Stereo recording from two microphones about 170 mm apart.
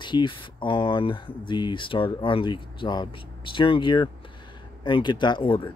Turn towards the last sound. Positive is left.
turn(degrees=30)  # may be behind; listen again after turning